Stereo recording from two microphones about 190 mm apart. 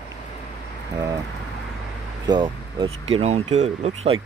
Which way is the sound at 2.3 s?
25° right (ahead or behind).